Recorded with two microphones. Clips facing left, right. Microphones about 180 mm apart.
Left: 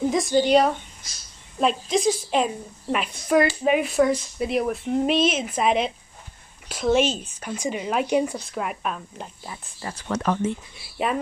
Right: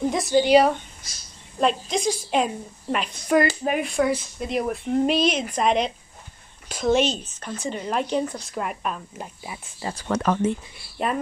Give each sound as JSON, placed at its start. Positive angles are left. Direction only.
{"t": 0.1, "sound": "speech", "side_deg": 0}
{"t": 10.0, "sound": "speech", "side_deg": -55}
{"t": 11.0, "sound": "speech", "side_deg": 5}